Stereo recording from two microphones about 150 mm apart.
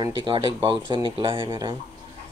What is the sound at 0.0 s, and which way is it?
Speech, 30° right (ahead or behind).